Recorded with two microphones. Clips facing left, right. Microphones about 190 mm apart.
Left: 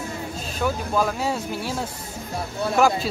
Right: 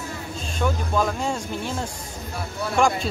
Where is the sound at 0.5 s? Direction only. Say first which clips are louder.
Even; 5° left (ahead or behind).